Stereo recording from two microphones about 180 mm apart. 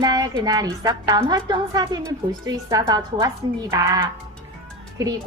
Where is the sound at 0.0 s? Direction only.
25° right (ahead or behind).